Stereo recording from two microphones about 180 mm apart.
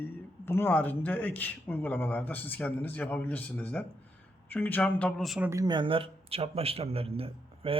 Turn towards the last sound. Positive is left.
turn(degrees=-30)  # may be behind; listen again after turning